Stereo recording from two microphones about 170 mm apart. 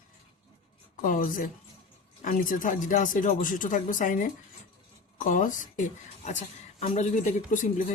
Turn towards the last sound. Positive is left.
turn(degrees=50)  # may be behind; listen again after turning